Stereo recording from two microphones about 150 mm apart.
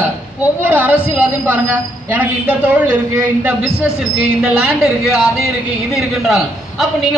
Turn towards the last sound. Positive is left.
turn(degrees=0)  # may be behind; listen again after turning